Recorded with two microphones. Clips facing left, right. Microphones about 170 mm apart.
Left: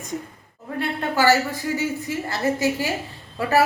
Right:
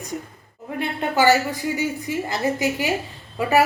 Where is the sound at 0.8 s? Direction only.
20° right (ahead or behind).